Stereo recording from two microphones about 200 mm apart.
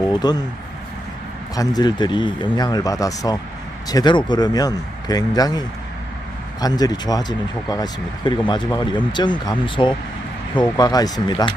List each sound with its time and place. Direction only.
0.1 s speech: 20° left (ahead or behind)
1.5 s speech: 20° left (ahead or behind)